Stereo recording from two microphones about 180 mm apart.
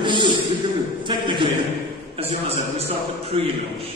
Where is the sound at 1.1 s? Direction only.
25° right (ahead or behind).